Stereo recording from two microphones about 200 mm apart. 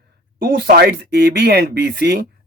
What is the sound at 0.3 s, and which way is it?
Speech, 45° right (ahead or behind).